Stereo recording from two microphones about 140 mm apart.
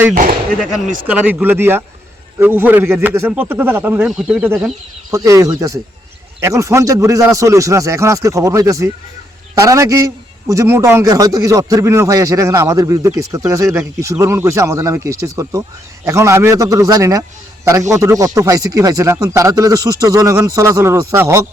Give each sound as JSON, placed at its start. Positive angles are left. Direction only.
{"t": 0.2, "sound": "speech", "side_deg": -70}
{"t": 1.0, "sound": "a man's voice", "side_deg": -10}
{"t": 4.1, "sound": "speech", "side_deg": -5}
{"t": 5.1, "sound": "speech", "side_deg": -20}